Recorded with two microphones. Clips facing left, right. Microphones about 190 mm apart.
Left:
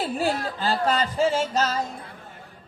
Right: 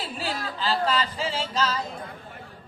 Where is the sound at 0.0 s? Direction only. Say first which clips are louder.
Left 7 dB; 50° left (ahead or behind).